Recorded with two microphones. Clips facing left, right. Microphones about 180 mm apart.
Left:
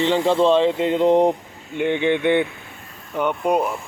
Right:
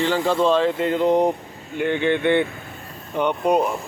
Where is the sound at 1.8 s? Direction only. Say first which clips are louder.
Left 1 dB; 15° left (ahead or behind).